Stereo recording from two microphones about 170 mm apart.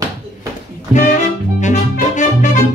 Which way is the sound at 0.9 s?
45° left (ahead or behind).